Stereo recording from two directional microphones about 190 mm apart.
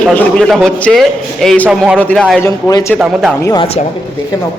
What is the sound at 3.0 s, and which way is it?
Speech, centre (ahead or behind).